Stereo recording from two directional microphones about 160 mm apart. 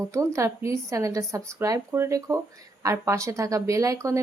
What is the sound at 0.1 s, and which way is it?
Speech, 20° right (ahead or behind).